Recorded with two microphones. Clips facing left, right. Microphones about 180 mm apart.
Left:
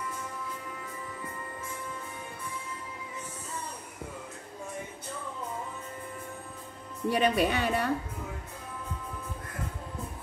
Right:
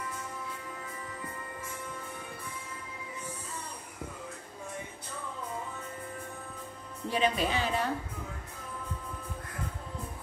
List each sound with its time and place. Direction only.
7.1 s a woman's voice: 60° left (ahead or behind)